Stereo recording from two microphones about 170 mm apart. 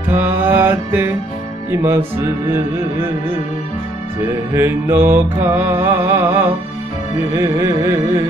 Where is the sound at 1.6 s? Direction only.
15° right (ahead or behind).